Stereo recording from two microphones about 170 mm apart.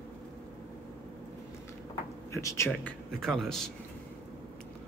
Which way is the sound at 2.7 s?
5° left (ahead or behind).